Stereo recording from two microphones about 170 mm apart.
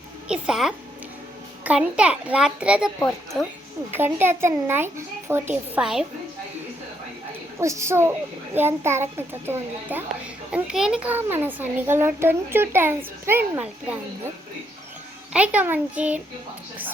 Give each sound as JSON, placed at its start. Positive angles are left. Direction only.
{"t": 0.3, "sound": "a child's voice", "side_deg": -5}
{"t": 3.9, "sound": "a child's voice", "side_deg": -15}
{"t": 7.6, "sound": "a child's voice", "side_deg": -15}
{"t": 15.3, "sound": "a child's voice", "side_deg": -10}